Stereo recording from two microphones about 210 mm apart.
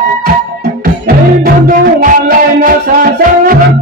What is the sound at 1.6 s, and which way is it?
Music, 40° right (ahead or behind).